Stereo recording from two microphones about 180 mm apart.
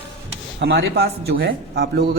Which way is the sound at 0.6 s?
65° right (ahead or behind).